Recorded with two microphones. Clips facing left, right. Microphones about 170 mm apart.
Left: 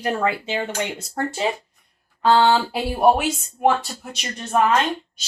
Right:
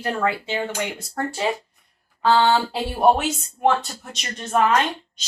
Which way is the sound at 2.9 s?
10° left (ahead or behind).